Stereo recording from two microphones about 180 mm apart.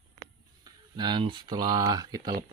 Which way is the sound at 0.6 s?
25° right (ahead or behind).